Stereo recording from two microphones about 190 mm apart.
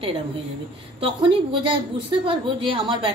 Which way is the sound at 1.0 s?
25° right (ahead or behind).